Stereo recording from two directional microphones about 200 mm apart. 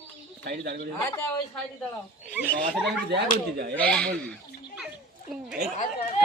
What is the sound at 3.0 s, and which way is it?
Speech, 55° right (ahead or behind).